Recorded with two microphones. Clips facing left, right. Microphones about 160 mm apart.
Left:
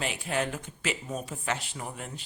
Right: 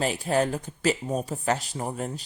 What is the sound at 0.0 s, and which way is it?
A woman's voice, 40° right (ahead or behind).